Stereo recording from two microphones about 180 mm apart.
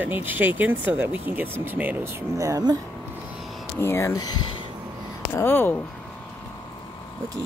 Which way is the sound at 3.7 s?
15° left (ahead or behind).